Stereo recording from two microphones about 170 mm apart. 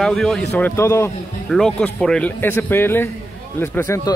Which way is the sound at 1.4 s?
5° left (ahead or behind).